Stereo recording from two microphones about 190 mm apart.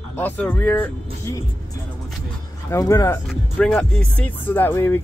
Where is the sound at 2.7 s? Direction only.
15° left (ahead or behind).